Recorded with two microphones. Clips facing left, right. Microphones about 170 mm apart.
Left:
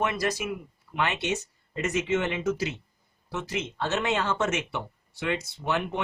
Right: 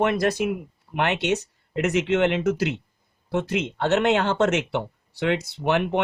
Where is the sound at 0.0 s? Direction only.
60° right (ahead or behind).